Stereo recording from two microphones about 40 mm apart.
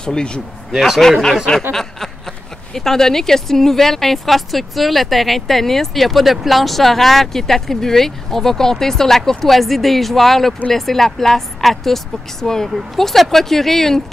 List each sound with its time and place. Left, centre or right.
0.0 s speech: left
0.7 s speech: centre
1.7 s speech: centre